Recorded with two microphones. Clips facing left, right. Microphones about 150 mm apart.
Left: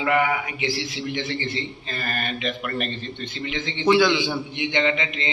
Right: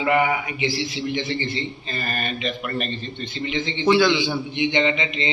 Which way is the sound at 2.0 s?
5° left (ahead or behind).